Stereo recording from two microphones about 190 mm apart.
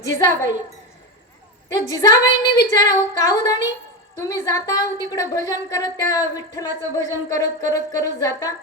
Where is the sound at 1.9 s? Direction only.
20° left (ahead or behind).